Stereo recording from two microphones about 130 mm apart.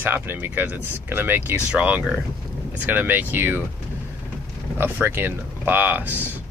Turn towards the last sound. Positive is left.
turn(degrees=-15)  # may be behind; listen again after turning